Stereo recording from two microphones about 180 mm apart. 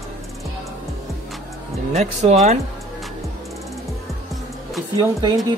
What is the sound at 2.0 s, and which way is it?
Speech, 35° right (ahead or behind).